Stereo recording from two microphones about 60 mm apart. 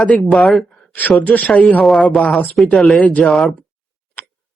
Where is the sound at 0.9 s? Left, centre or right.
Left.